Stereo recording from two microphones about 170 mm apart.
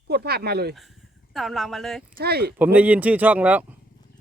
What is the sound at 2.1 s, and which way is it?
Speech, 70° right (ahead or behind).